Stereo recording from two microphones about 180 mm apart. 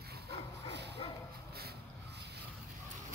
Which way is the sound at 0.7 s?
70° right (ahead or behind).